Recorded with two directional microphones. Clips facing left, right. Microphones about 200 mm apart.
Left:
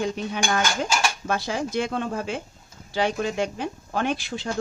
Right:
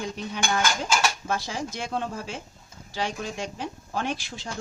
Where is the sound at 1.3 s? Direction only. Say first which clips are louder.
Left 4 dB; 55° left (ahead or behind).